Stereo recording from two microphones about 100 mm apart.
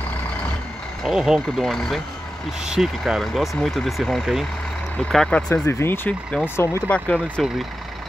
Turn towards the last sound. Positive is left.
turn(degrees=10)  # may be behind; listen again after turning